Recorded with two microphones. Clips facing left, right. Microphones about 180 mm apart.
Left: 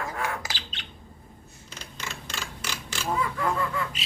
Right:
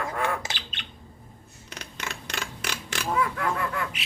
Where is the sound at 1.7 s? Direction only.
65° right (ahead or behind).